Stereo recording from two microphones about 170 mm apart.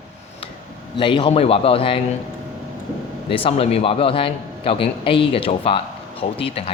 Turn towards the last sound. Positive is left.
turn(degrees=35)  # may be behind; listen again after turning